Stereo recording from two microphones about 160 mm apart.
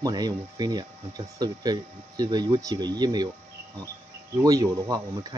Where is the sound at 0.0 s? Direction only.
25° right (ahead or behind).